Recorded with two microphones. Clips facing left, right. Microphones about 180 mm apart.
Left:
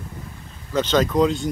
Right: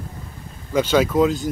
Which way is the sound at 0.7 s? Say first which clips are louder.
Right 2 dB; 10° right (ahead or behind).